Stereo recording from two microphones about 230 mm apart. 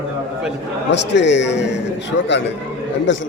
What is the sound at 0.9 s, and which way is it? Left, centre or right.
A man's voice, left.